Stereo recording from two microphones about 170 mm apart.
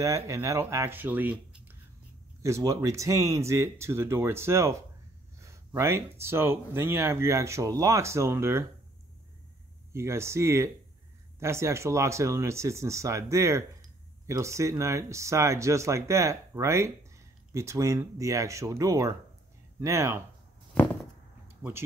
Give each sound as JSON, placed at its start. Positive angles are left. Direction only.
{"t": 0.0, "sound": "speech", "side_deg": -20}
{"t": 9.9, "sound": "speech", "side_deg": -15}
{"t": 20.7, "sound": "a sound", "side_deg": 10}